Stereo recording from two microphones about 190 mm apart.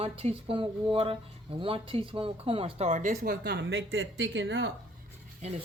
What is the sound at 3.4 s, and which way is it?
Speech, 70° right (ahead or behind).